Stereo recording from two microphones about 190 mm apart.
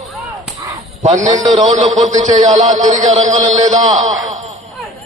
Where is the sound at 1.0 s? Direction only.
40° right (ahead or behind).